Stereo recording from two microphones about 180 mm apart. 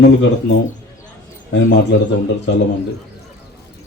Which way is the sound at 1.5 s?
75° left (ahead or behind).